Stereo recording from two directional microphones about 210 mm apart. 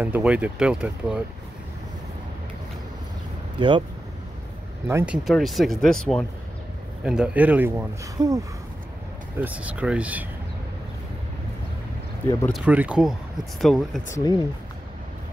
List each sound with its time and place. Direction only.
0.0 s speech: 5° right (ahead or behind)
3.5 s speech: 25° right (ahead or behind)
4.8 s speech: 10° right (ahead or behind)
9.4 s speech: 5° right (ahead or behind)
12.4 s speech: 5° right (ahead or behind)
14.0 s speech: 15° left (ahead or behind)